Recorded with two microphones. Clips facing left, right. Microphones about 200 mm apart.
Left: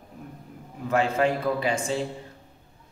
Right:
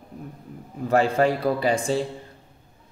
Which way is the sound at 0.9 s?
35° right (ahead or behind).